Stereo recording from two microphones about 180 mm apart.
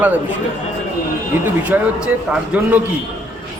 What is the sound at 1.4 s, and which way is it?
A man's voice, 10° right (ahead or behind).